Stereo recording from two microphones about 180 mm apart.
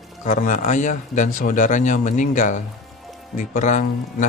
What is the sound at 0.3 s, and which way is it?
Speech, 45° left (ahead or behind).